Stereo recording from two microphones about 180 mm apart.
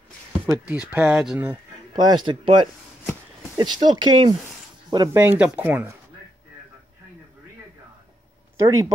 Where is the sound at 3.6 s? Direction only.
25° right (ahead or behind).